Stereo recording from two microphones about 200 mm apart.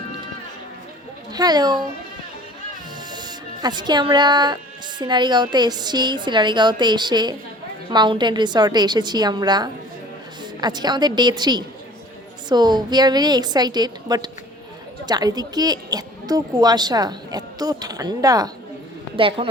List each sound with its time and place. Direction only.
1.3 s a woman's voice: 20° right (ahead or behind)
3.1 s a woman's voice: 20° right (ahead or behind)